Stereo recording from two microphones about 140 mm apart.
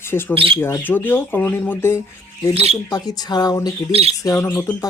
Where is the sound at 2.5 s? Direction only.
50° right (ahead or behind).